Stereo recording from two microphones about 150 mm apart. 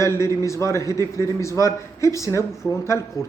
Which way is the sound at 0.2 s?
20° left (ahead or behind).